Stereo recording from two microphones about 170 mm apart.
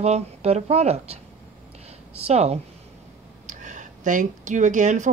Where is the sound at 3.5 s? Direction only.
45° right (ahead or behind).